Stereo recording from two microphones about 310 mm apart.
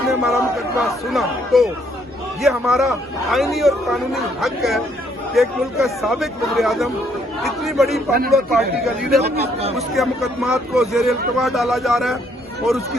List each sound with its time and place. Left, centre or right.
0.0 s speech: centre
9.3 s speech: centre
9.7 s speech: centre